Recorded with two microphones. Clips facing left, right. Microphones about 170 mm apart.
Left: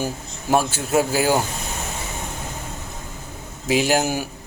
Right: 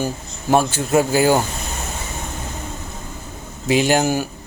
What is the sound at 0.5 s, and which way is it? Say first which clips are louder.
Speech: right 3 dB; 5° left (ahead or behind).